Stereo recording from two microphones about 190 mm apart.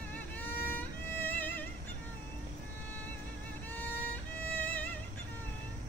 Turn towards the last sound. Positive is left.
turn(degrees=10)  # may be behind; listen again after turning